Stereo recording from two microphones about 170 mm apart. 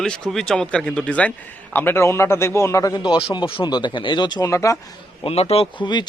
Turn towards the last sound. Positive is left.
turn(degrees=25)  # may be behind; listen again after turning